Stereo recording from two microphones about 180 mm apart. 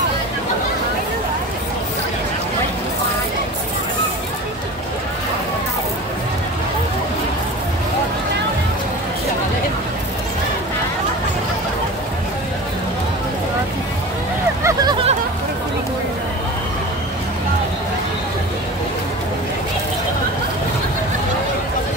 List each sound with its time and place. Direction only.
14.6 s vehicle: 20° right (ahead or behind)